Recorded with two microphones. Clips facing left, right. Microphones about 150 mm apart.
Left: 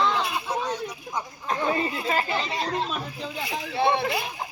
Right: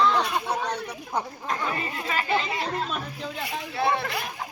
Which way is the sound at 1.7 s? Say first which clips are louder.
Left 5 dB; 30° left (ahead or behind).